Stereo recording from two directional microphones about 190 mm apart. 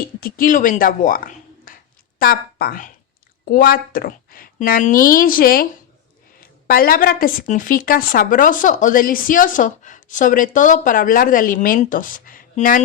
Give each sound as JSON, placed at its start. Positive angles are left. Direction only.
{"t": 0.2, "sound": "a woman's voice", "side_deg": 50}
{"t": 1.7, "sound": "a sound", "side_deg": 50}
{"t": 2.1, "sound": "a woman's voice", "side_deg": 50}